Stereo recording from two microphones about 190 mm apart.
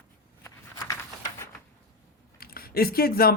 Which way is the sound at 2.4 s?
50° left (ahead or behind).